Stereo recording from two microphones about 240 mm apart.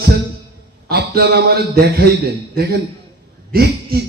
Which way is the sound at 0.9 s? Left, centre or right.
Right.